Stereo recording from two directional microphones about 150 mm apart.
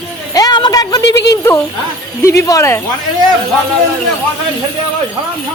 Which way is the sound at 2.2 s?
20° left (ahead or behind).